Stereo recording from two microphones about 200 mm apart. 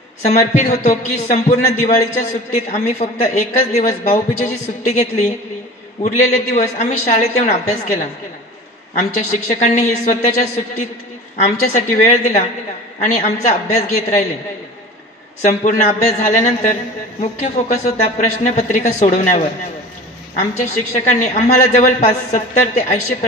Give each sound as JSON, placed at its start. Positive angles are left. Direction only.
{"t": 0.2, "sound": "a man's voice", "side_deg": 35}
{"t": 8.9, "sound": "a man's voice", "side_deg": 35}
{"t": 15.4, "sound": "a man's voice", "side_deg": 35}
{"t": 21.1, "sound": "a man's voice", "side_deg": 35}